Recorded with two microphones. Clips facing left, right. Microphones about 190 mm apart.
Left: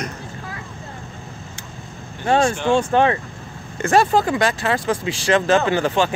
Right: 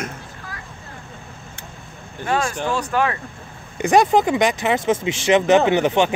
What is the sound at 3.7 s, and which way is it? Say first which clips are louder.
Speech: right 1 dB; 15° right (ahead or behind).